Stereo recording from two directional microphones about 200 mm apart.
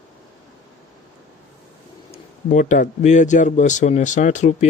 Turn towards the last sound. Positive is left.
turn(degrees=35)  # may be behind; listen again after turning